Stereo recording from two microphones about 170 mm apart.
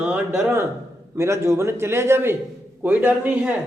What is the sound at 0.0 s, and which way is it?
A man's voice, 10° right (ahead or behind).